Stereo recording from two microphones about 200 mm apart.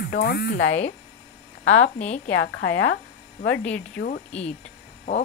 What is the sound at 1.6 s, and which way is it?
Speech, 80° left.